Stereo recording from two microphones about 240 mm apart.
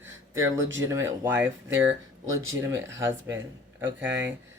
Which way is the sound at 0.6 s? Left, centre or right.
Right.